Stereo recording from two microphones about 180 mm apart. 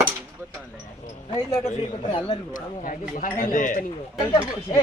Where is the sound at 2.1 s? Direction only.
30° left (ahead or behind).